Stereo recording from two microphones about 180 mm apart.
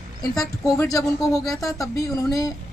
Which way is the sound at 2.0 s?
20° left (ahead or behind).